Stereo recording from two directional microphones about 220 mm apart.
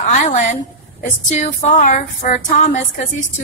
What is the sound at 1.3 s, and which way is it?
Female singing, 30° left (ahead or behind).